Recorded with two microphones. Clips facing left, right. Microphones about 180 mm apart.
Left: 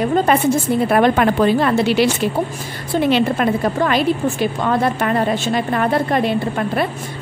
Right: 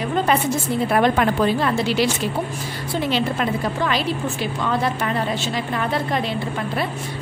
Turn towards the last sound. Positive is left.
turn(degrees=55)  # may be behind; listen again after turning